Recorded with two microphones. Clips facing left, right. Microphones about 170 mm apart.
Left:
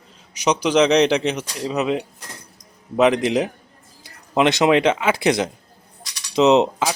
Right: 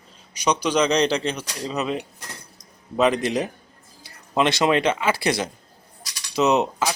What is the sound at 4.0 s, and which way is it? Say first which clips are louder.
Speech: left 3 dB; 15° left (ahead or behind).